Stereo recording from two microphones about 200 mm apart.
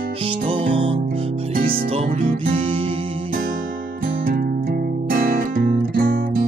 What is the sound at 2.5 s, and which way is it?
Music, 30° right (ahead or behind).